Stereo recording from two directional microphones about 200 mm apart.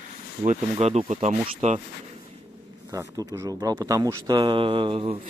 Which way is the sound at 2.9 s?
15° right (ahead or behind).